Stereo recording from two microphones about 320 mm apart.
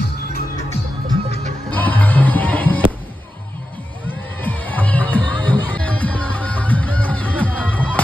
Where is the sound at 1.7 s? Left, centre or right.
Centre.